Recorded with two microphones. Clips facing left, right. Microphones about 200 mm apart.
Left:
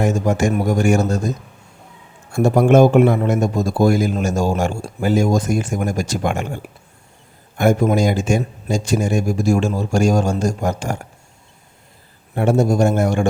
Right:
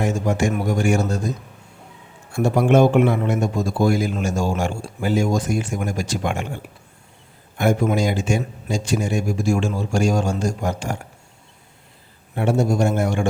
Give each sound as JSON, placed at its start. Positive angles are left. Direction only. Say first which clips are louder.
{"t": 0.0, "sound": "a man's voice", "louder": "left 3 dB", "side_deg": 45}
{"t": 2.3, "sound": "a man's voice", "louder": "left 4 dB", "side_deg": 45}
{"t": 7.6, "sound": "a man's voice", "louder": "left 4 dB", "side_deg": 40}
{"t": 12.3, "sound": "a man's voice", "louder": "left 4 dB", "side_deg": 45}